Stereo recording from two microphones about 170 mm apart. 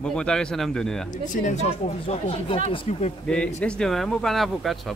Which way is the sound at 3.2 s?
5° left (ahead or behind).